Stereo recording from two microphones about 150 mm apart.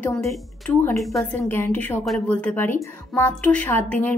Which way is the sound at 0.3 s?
10° left (ahead or behind).